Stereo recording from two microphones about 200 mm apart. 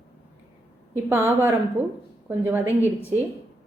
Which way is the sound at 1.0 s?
10° right (ahead or behind).